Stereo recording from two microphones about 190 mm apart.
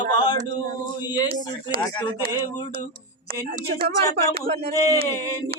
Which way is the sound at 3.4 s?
50° right (ahead or behind).